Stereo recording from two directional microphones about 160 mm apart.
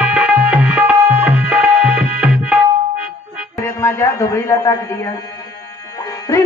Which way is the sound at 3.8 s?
15° left (ahead or behind).